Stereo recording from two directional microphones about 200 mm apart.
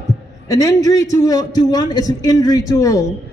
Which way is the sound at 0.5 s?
20° left (ahead or behind).